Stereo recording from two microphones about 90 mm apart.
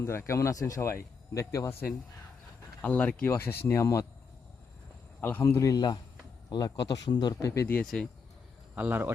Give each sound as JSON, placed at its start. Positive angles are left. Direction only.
{"t": 0.0, "sound": "speech", "side_deg": 30}
{"t": 2.8, "sound": "speech", "side_deg": 15}
{"t": 5.2, "sound": "speech", "side_deg": 25}
{"t": 5.5, "sound": "speech", "side_deg": 40}
{"t": 8.7, "sound": "a man's voice", "side_deg": -20}